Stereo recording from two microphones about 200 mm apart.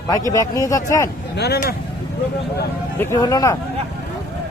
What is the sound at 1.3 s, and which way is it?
Speech, 55° left (ahead or behind).